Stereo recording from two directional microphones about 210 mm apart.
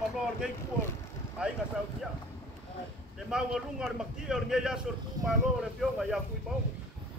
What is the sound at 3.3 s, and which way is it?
Speech, 5° right (ahead or behind).